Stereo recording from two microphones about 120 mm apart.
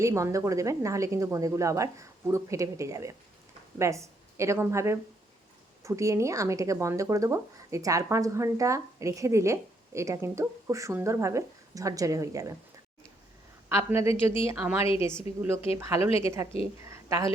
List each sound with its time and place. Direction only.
0.0 s speech: 25° right (ahead or behind)
13.7 s a woman's voice: 20° right (ahead or behind)
16.0 s a woman's voice: 55° left (ahead or behind)
16.2 s speech: 25° right (ahead or behind)
16.8 s a sound: 25° right (ahead or behind)